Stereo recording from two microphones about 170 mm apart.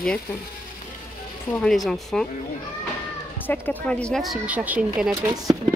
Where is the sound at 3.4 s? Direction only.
10° left (ahead or behind); by 5.2 s 5° right (ahead or behind).